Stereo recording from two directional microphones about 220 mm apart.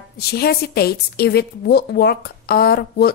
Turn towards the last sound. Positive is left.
turn(degrees=45)  # may be behind; listen again after turning